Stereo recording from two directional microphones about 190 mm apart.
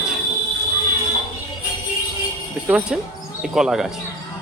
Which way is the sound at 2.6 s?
5° right (ahead or behind).